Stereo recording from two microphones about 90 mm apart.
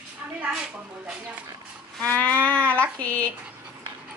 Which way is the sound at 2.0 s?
15° left (ahead or behind).